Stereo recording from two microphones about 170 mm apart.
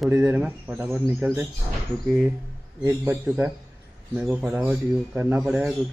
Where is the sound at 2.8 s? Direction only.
15° right (ahead or behind).